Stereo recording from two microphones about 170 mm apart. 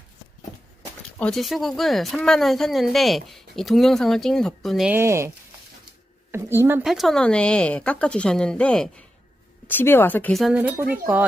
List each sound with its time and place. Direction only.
1.2 s speech: centre (ahead or behind)
4.9 s speech: 15° right (ahead or behind)
6.3 s speech: 15° right (ahead or behind)
6.8 s speech: centre (ahead or behind)